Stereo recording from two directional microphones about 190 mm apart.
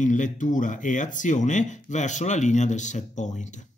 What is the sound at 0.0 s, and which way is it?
Speech, 40° left (ahead or behind).